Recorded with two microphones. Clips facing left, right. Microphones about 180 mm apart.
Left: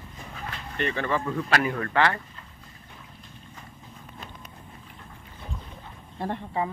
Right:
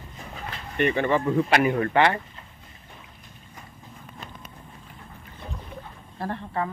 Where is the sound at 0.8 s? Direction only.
20° right (ahead or behind).